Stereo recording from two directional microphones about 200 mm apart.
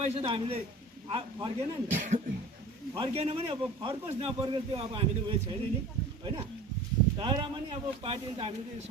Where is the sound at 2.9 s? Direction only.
30° right (ahead or behind).